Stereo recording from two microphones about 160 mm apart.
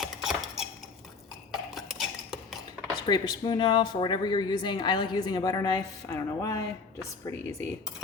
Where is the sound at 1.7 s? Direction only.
Centre (ahead or behind).